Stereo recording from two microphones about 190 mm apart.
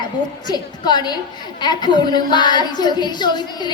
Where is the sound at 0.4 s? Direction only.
20° left (ahead or behind).